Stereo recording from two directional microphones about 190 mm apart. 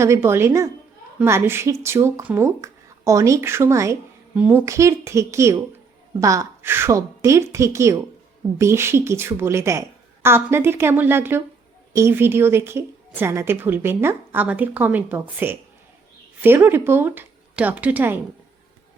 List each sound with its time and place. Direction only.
0.0 s a woman's voice: 15° right (ahead or behind)